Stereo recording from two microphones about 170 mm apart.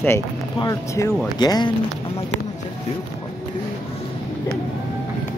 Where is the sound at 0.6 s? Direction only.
20° left (ahead or behind).